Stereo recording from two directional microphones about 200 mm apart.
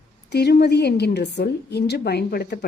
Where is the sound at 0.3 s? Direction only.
55° left (ahead or behind).